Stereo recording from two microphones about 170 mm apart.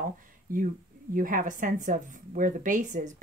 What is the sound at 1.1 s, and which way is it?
A woman's voice, 55° right (ahead or behind).